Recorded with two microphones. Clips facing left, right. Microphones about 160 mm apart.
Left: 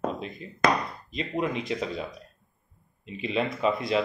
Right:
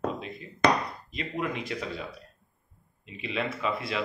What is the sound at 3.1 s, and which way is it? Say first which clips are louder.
Speech: left 5 dB; 30° left (ahead or behind).